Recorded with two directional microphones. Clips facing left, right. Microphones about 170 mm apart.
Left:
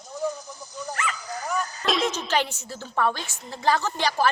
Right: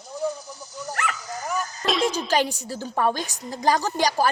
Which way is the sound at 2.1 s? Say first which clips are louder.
Right 3 dB; 10° right (ahead or behind).